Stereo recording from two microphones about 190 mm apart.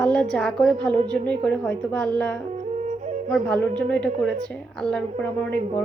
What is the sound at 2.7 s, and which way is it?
Flute, 40° right (ahead or behind).